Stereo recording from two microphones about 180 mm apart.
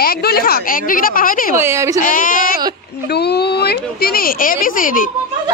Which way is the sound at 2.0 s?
50° left (ahead or behind).